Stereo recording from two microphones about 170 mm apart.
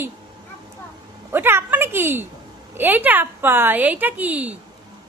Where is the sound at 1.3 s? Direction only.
15° right (ahead or behind).